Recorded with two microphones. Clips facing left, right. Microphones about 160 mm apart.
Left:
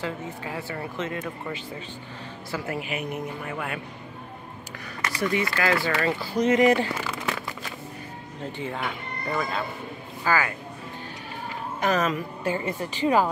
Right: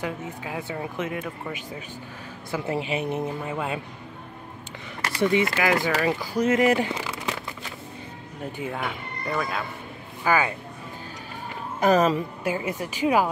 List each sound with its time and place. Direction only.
0.0 s speech: 15° right (ahead or behind)
2.5 s speech: 25° right (ahead or behind)
5.0 s speech: 25° right (ahead or behind); by 6.9 s 5° right (ahead or behind)
6.9 s crumpling: 20° right (ahead or behind)
8.5 s speech: 10° right (ahead or behind)
10.2 s speech: 20° right (ahead or behind)
11.8 s speech: 35° right (ahead or behind)
12.4 s speech: 10° right (ahead or behind)